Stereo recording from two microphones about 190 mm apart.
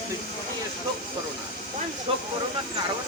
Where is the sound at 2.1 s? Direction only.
30° right (ahead or behind).